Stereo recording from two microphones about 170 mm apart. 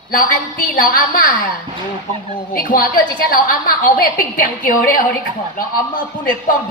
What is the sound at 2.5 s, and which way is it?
A woman's voice, 55° left (ahead or behind).